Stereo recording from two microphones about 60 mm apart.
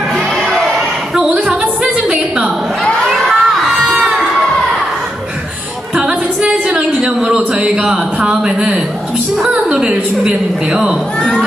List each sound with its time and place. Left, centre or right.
1.5 s music: centre
2.8 s crowd: centre
3.2 s music: centre
3.8 s crowd: centre
5.9 s music: centre
7.0 s a sound: centre
9.4 s a woman's voice: centre